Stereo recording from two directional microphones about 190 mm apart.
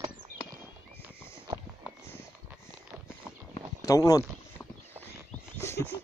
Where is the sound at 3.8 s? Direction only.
15° left (ahead or behind).